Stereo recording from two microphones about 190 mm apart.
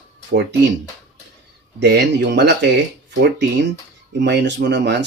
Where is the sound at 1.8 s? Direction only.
60° right (ahead or behind).